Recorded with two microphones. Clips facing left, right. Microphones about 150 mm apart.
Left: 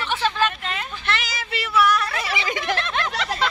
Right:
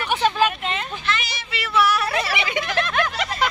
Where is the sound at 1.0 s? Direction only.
75° left (ahead or behind).